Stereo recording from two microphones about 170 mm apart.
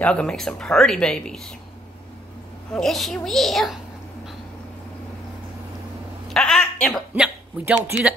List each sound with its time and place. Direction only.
0.0 s speech: 5° left (ahead or behind)
2.7 s speech: centre (ahead or behind)
6.2 s a sound: 5° left (ahead or behind)